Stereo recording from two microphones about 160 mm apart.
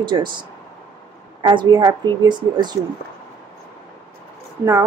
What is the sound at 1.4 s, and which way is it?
Speech, 30° right (ahead or behind).